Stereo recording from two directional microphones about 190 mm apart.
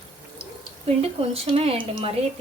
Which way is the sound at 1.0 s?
30° right (ahead or behind).